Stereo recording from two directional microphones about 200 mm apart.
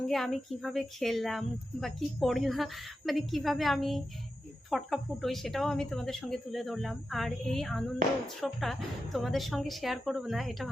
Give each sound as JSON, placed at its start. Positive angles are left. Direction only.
{"t": 0.1, "sound": "speech", "side_deg": 0}